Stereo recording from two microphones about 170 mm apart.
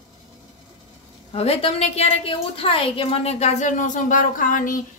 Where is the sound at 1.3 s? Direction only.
35° left (ahead or behind).